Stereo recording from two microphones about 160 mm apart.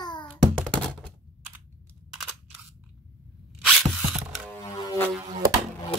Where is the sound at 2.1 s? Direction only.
5° right (ahead or behind).